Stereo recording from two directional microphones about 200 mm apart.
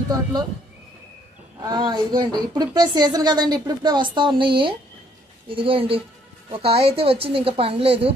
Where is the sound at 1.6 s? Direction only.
20° right (ahead or behind).